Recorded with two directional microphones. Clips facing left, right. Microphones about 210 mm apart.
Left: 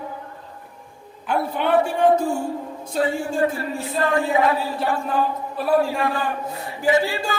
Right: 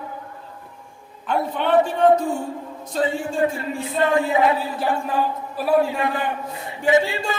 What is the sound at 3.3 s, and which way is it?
Speech, 25° right (ahead or behind).